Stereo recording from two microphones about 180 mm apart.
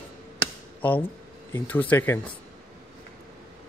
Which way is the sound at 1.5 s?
10° left (ahead or behind).